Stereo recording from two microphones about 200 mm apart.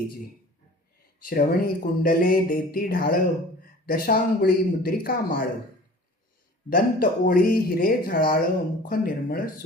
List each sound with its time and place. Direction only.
1.2 s speech: 45° left (ahead or behind)
6.7 s speech: 45° left (ahead or behind)